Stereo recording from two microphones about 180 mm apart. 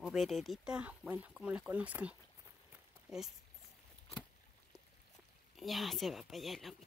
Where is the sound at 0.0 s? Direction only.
Centre (ahead or behind).